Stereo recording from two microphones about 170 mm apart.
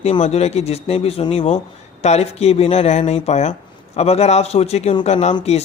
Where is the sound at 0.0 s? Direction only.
40° left (ahead or behind).